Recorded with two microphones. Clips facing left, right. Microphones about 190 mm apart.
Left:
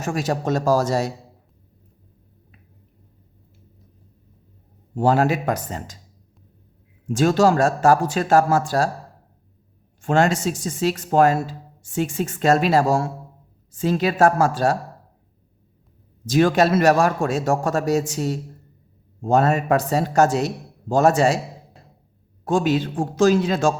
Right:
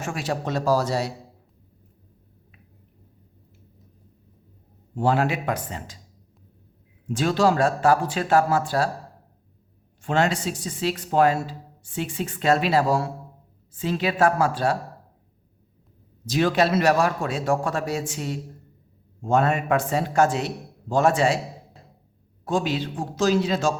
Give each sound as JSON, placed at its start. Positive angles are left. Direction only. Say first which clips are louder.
{"t": 0.0, "sound": "speech", "louder": "left 4 dB", "side_deg": 40}
{"t": 4.9, "sound": "speech", "louder": "left 4 dB", "side_deg": 40}
{"t": 7.1, "sound": "speech", "louder": "left 4 dB", "side_deg": 45}
{"t": 10.0, "sound": "speech", "louder": "left 4 dB", "side_deg": 45}
{"t": 16.2, "sound": "speech", "louder": "left 4 dB", "side_deg": 45}
{"t": 22.4, "sound": "speech", "louder": "left 5 dB", "side_deg": 50}